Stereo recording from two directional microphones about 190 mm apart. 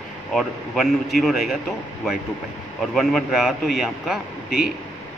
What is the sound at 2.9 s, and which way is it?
A man's voice, centre (ahead or behind).